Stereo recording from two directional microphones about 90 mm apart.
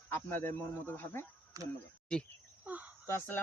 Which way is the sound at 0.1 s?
25° left (ahead or behind).